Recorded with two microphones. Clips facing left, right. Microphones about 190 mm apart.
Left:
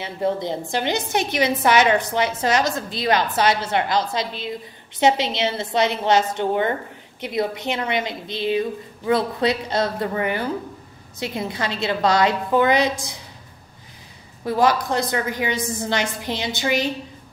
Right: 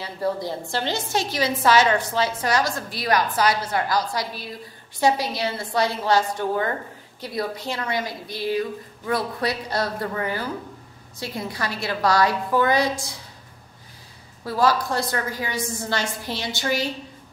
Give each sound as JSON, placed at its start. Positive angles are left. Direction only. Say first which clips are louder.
{"t": 0.0, "sound": "a woman's voice", "louder": "left 3 dB", "side_deg": 20}
{"t": 14.4, "sound": "a woman's voice", "louder": "left 2 dB", "side_deg": 20}